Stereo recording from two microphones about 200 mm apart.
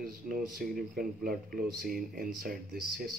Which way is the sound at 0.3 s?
45° right (ahead or behind).